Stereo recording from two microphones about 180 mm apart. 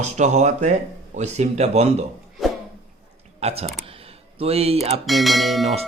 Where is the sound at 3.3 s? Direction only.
35° right (ahead or behind).